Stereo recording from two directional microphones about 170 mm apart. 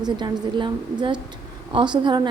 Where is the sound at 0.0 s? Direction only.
25° right (ahead or behind).